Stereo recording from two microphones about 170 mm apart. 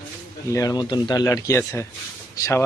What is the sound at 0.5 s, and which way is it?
Speech, 20° left (ahead or behind).